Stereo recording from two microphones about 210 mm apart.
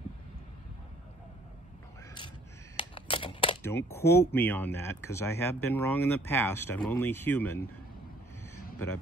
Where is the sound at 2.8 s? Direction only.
25° left (ahead or behind).